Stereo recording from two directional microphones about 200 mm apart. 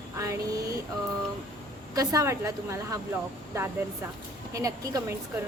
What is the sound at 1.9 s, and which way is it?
A woman's voice, 15° right (ahead or behind).